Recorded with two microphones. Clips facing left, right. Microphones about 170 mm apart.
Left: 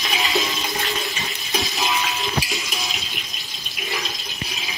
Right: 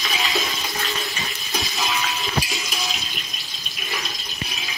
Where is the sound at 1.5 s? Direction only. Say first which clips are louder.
Left 2 dB; 20° left (ahead or behind).